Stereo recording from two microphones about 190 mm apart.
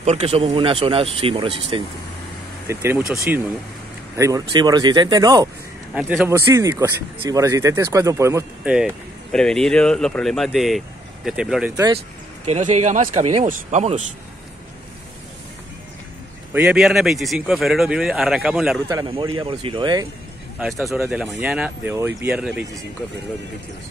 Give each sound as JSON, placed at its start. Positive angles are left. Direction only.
{"t": 0.0, "sound": "speech", "side_deg": -35}
{"t": 2.7, "sound": "speech", "side_deg": -10}
{"t": 5.9, "sound": "speech", "side_deg": 0}
{"t": 6.2, "sound": "speech", "side_deg": -15}
{"t": 9.3, "sound": "speech", "side_deg": 5}
{"t": 12.4, "sound": "speech", "side_deg": -35}
{"t": 16.5, "sound": "speech", "side_deg": -5}
{"t": 19.0, "sound": "speech", "side_deg": -25}
{"t": 20.5, "sound": "speech", "side_deg": 0}